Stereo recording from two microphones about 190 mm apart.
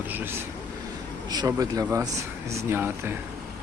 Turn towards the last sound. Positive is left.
turn(degrees=-10)  # may be behind; listen again after turning